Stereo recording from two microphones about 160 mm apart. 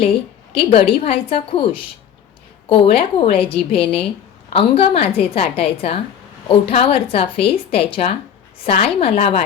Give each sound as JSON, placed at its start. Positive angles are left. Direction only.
{"t": 0.5, "sound": "a woman's voice", "side_deg": 35}